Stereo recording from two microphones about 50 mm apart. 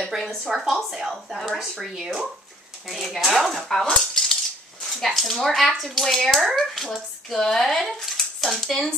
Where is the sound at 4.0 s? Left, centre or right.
Centre.